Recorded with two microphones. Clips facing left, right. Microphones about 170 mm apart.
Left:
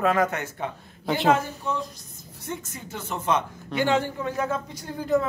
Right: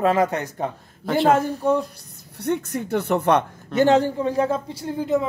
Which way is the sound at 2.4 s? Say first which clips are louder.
Right 11 dB; 65° right (ahead or behind).